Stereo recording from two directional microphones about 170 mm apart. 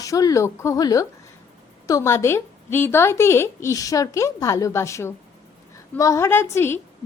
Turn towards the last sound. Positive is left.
turn(degrees=15)  # may be behind; listen again after turning